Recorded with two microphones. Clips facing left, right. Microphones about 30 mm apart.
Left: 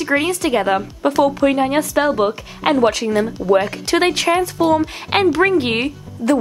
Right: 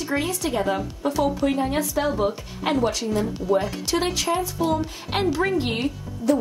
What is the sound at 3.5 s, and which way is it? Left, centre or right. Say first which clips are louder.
A woman's voice: left 7 dB; left.